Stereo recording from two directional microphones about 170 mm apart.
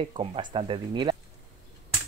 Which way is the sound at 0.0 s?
35° right (ahead or behind).